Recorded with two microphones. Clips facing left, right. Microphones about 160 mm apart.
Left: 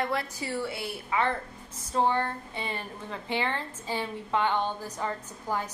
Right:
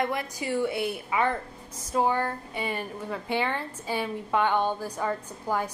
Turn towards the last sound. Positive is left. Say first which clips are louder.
# right 3 dB
turn(degrees=-10)  # may be behind; listen again after turning